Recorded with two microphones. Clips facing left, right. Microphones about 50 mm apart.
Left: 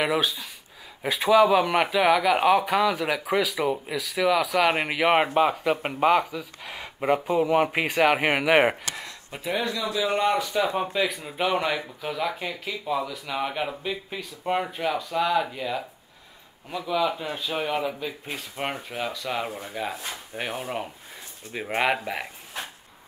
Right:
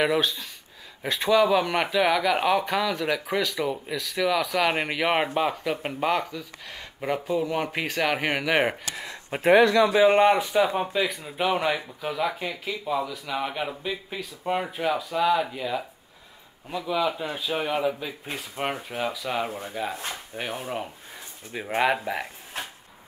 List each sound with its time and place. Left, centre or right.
0.0 s speech: centre
9.4 s speech: right
9.9 s a man's voice: right
10.5 s speech: centre